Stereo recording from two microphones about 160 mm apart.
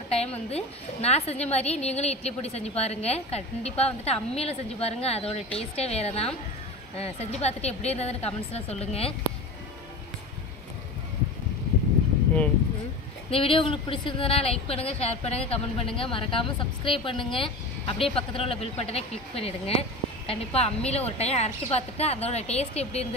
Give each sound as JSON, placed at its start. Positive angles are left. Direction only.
{"t": 0.1, "sound": "a woman's voice", "side_deg": 40}
{"t": 13.3, "sound": "a woman's voice", "side_deg": 35}